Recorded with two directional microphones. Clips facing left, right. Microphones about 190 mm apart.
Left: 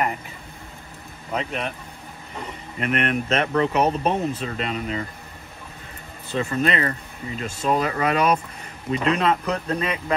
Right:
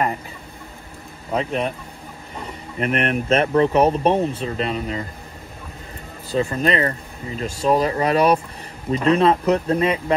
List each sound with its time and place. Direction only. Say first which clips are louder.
1.3 s speech: right 5 dB; 35° right (ahead or behind)
2.8 s speech: right 2 dB; 35° right (ahead or behind)
6.3 s speech: right 3 dB; 35° right (ahead or behind)